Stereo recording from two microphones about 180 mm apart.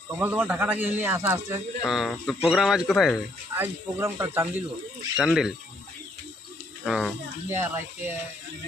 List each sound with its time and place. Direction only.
0.2 s speech: 10° right (ahead or behind)
1.8 s speech: centre (ahead or behind)
3.6 s speech: 15° right (ahead or behind)
5.1 s speech: centre (ahead or behind)
6.8 s speech: centre (ahead or behind)
7.5 s speech: 15° right (ahead or behind)